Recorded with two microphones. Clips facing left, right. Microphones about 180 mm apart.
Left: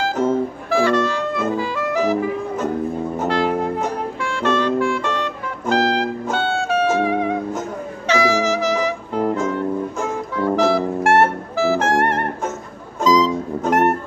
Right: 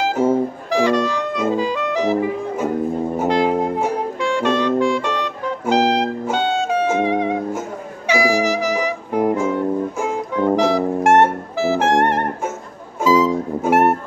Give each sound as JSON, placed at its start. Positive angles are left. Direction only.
{"t": 0.0, "sound": "music", "side_deg": -10}